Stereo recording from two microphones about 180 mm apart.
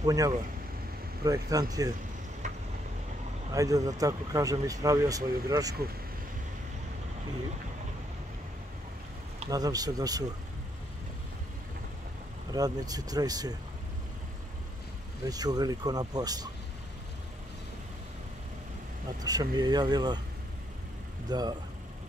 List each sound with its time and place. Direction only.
0.0 s speech: 20° right (ahead or behind)
3.5 s speech: 20° right (ahead or behind)
9.5 s speech: 20° right (ahead or behind)
12.5 s speech: 20° right (ahead or behind)
15.2 s speech: 20° right (ahead or behind)
19.2 s speech: 20° right (ahead or behind)
21.3 s speech: 20° right (ahead or behind)